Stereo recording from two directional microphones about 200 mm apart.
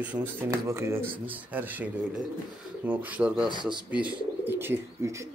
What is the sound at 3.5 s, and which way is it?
Speech, 25° right (ahead or behind).